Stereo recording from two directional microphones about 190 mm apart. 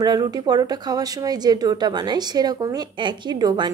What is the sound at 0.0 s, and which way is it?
Speech, 20° right (ahead or behind).